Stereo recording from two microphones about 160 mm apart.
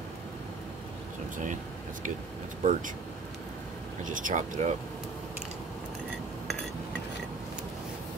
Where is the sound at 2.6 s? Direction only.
50° right (ahead or behind).